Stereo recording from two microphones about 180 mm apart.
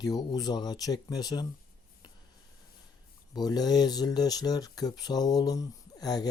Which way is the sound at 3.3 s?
20° left (ahead or behind).